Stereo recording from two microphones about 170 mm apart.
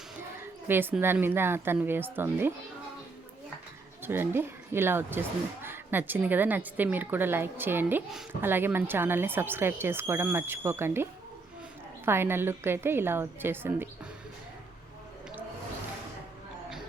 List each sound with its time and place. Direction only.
0.3 s a woman's voice: 10° right (ahead or behind)
4.0 s a woman's voice: 10° right (ahead or behind)